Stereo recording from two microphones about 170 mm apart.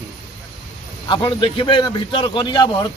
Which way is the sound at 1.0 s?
30° left (ahead or behind).